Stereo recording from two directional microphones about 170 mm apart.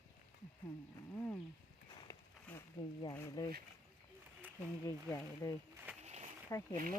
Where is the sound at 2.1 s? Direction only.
20° left (ahead or behind).